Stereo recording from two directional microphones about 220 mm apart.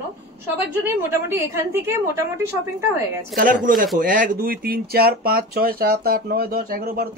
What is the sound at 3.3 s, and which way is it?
Speech, 40° right (ahead or behind).